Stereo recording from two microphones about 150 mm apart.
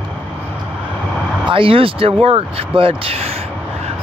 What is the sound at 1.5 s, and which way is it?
Speech, 35° right (ahead or behind).